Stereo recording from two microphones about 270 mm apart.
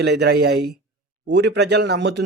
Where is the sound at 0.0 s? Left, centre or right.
Right.